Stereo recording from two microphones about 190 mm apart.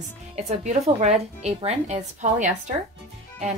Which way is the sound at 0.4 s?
35° right (ahead or behind).